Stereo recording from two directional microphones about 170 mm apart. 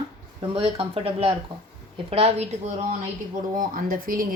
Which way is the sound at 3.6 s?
55° right (ahead or behind).